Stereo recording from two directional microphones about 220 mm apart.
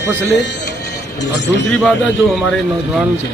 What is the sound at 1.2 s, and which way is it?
Speech, 50° left (ahead or behind).